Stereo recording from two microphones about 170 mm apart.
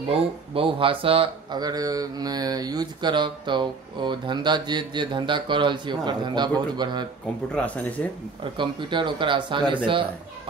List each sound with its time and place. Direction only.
0.1 s speech: 30° right (ahead or behind)
7.5 s speech: 10° left (ahead or behind)
8.5 s speech: 30° right (ahead or behind)